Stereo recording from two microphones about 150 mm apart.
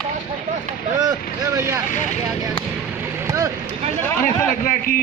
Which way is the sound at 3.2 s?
20° right (ahead or behind).